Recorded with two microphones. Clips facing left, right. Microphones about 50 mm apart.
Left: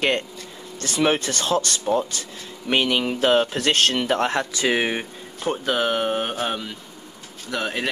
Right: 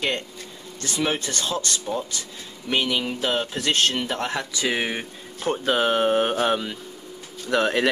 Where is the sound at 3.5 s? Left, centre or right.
Left.